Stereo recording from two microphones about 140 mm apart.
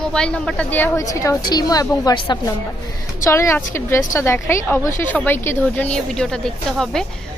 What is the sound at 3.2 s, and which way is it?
A woman's voice, 20° left (ahead or behind).